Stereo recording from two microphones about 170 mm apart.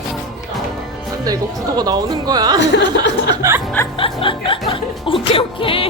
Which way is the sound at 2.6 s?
90° left.